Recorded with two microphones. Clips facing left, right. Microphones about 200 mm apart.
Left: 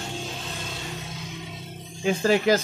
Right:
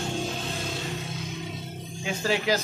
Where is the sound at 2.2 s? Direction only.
50° left (ahead or behind).